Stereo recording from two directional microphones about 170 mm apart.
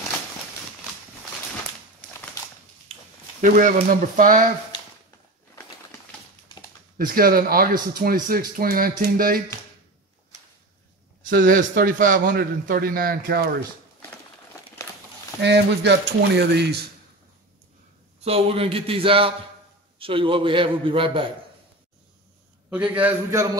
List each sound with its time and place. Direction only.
2.9 s a sound: 50° right (ahead or behind)
4.2 s speech: 50° right (ahead or behind)
7.0 s a man's voice: 60° right (ahead or behind)
11.4 s a man's voice: 55° right (ahead or behind)
15.4 s speech: 90° right
18.2 s a man's voice: 35° right (ahead or behind)
22.7 s a man's voice: 10° right (ahead or behind)